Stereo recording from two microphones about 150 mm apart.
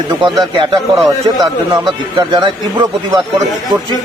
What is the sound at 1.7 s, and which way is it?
Speech, 30° right (ahead or behind).